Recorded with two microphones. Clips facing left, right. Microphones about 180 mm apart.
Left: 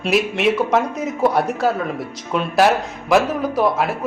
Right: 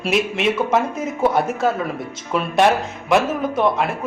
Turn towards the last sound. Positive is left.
turn(degrees=0)  # may be behind; listen again after turning